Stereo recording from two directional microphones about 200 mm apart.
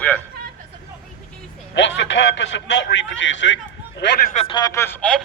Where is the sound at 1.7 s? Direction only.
65° left (ahead or behind).